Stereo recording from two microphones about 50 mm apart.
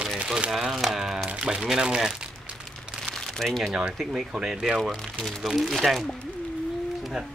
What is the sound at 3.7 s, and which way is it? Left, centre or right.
Speech, centre.